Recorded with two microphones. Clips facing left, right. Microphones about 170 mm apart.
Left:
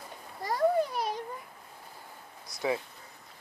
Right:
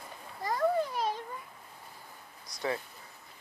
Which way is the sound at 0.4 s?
35° left (ahead or behind).